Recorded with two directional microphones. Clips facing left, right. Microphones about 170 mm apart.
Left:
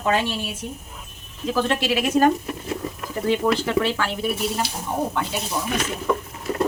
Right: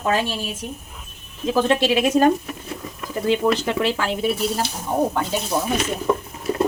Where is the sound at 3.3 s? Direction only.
20° right (ahead or behind).